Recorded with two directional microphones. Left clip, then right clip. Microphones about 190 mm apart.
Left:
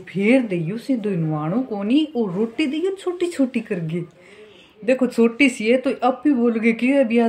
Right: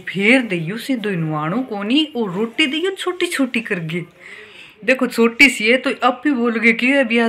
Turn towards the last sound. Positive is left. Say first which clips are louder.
# right 3 dB
turn(degrees=0)  # may be behind; listen again after turning